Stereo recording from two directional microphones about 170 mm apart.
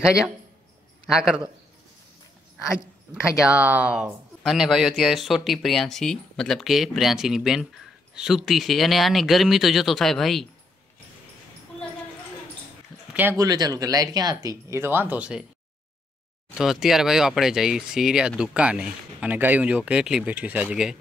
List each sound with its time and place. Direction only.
1.1 s speech: 5° right (ahead or behind)
3.1 s speech: 10° right (ahead or behind)
13.1 s speech: 10° right (ahead or behind)
16.5 s speech: centre (ahead or behind)